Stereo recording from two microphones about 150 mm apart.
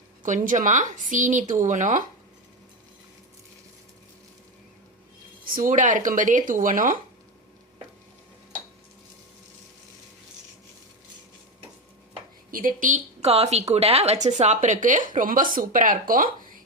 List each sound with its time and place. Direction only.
0.2 s speech: 60° right (ahead or behind)
5.5 s speech: 60° right (ahead or behind)
12.5 s a woman's voice: 70° right (ahead or behind)
13.2 s speech: 45° right (ahead or behind); by 16.3 s 65° right (ahead or behind)